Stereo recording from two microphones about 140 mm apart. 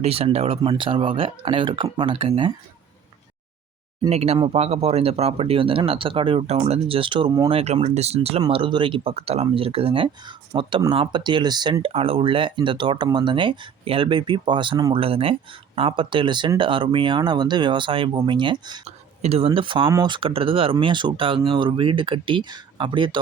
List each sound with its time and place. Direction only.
0.0 s speech: 45° right (ahead or behind)
4.1 s speech: 50° right (ahead or behind); by 7.5 s 30° right (ahead or behind)
7.5 s speech: 45° right (ahead or behind); by 11.8 s 30° right (ahead or behind)
11.8 s speech: 45° right (ahead or behind)
18.9 s speech: 50° right (ahead or behind)